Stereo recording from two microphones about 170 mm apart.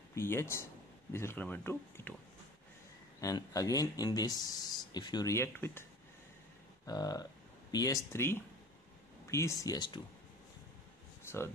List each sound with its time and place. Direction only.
0.1 s speech: 15° left (ahead or behind)
3.2 s speech: 20° left (ahead or behind)
6.9 s speech: 20° left (ahead or behind)
11.2 s speech: 15° left (ahead or behind)